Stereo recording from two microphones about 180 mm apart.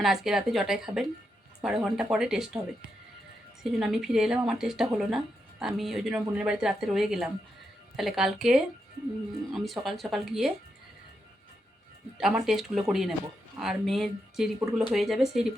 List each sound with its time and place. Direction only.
0.0 s speech: centre (ahead or behind)
12.1 s speech: 5° right (ahead or behind)